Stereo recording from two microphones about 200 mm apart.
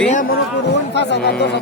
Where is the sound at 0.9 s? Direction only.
60° left (ahead or behind).